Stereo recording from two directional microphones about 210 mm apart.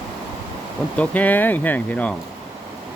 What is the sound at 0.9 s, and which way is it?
Speech, 5° left (ahead or behind).